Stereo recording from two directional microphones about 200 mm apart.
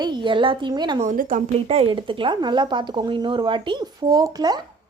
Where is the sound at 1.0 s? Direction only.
40° right (ahead or behind).